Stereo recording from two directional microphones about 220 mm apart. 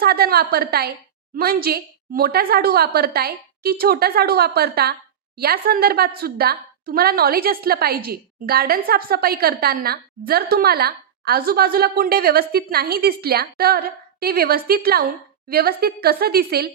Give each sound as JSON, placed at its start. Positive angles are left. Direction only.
{"t": 0.0, "sound": "a woman's voice", "side_deg": -45}